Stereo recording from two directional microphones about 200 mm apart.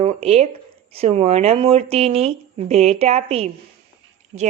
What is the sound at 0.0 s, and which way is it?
A woman's voice, 35° right (ahead or behind).